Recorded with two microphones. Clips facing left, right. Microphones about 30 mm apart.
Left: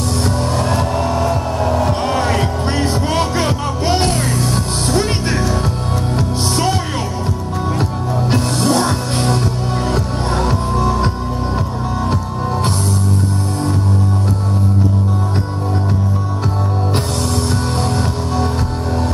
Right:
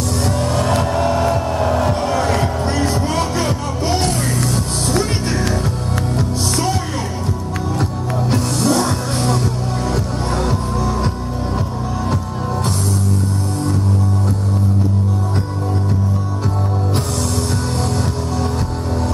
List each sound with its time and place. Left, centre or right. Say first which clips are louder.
0.5 s vehicle: even; centre
0.8 s music: right 1 dB; centre
1.1 s vehicle: even; centre
1.9 s music: left 1 dB; left
8.3 s music: left 1 dB; left